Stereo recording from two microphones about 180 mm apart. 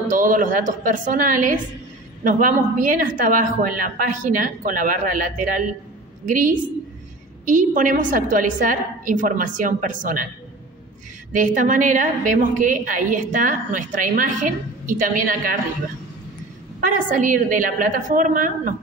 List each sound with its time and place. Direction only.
0.1 s a woman's voice: 45° right (ahead or behind)
11.3 s a woman's voice: 45° right (ahead or behind)
16.8 s a woman's voice: 45° right (ahead or behind)